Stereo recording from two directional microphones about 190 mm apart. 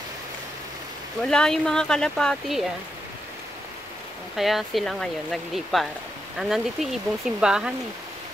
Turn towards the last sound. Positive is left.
turn(degrees=-5)  # may be behind; listen again after turning